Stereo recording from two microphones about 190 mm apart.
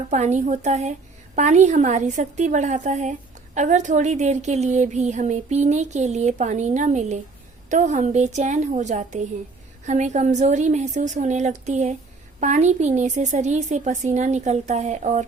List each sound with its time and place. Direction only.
0.1 s a woman's voice: 40° right (ahead or behind)